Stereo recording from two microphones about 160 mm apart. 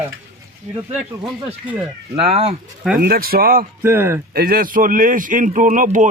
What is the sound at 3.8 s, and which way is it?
Speech, 15° right (ahead or behind).